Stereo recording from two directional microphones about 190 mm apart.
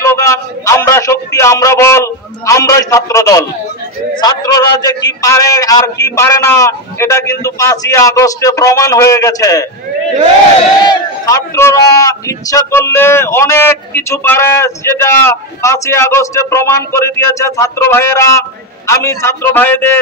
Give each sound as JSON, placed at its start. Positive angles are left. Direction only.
{"t": 0.0, "sound": "a sound", "side_deg": 15}
{"t": 4.1, "sound": "a man's voice", "side_deg": 20}
{"t": 10.9, "sound": "a man's voice", "side_deg": 15}